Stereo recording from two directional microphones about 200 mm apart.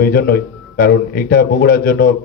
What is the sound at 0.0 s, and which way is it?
Speech, 50° left (ahead or behind).